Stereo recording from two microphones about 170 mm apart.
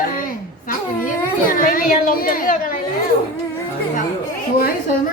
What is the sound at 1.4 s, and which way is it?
A child's voice, 55° left (ahead or behind).